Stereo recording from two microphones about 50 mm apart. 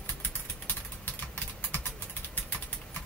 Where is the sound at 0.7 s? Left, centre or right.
Left.